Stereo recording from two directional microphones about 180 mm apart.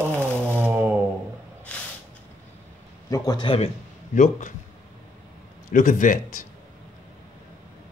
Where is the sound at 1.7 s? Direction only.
5° left (ahead or behind).